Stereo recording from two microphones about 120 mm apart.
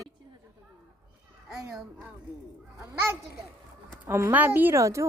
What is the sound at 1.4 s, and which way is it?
Speech, 5° right (ahead or behind).